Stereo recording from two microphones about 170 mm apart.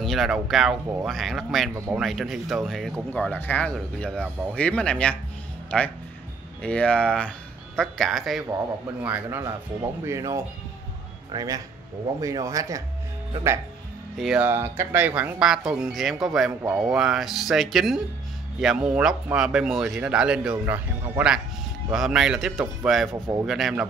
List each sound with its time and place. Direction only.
0.0 s speech: centre (ahead or behind)
8.5 s a man's voice: 20° right (ahead or behind)
14.1 s speech: 5° right (ahead or behind)
23.1 s a man's voice: 15° right (ahead or behind)
23.4 s speech: centre (ahead or behind)